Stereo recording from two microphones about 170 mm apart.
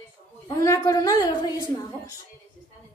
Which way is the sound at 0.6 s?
20° left (ahead or behind).